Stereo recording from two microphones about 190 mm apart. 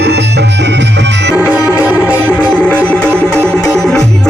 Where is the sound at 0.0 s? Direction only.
65° right (ahead or behind).